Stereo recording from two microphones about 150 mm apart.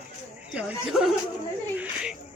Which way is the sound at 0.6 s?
5° right (ahead or behind).